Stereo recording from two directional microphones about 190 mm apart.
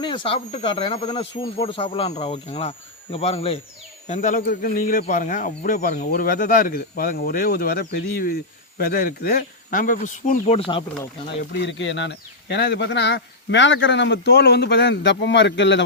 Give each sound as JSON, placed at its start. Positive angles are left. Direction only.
{"t": 0.0, "sound": "speech", "side_deg": 25}
{"t": 4.0, "sound": "speech", "side_deg": 40}
{"t": 10.6, "sound": "speech", "side_deg": 25}
{"t": 11.5, "sound": "speech", "side_deg": 70}